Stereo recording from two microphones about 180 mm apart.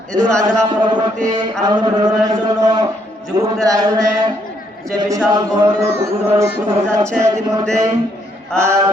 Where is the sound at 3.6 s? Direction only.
20° right (ahead or behind).